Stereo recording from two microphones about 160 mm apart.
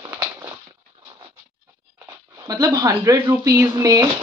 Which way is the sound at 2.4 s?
25° right (ahead or behind).